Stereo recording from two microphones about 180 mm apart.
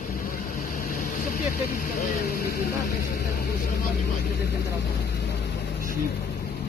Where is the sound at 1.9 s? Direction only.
50° left (ahead or behind).